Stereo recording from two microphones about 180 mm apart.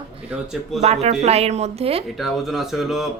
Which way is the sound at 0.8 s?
40° right (ahead or behind).